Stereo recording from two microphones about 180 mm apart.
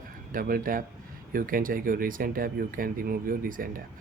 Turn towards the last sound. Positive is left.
turn(degrees=-50)  # may be behind; listen again after turning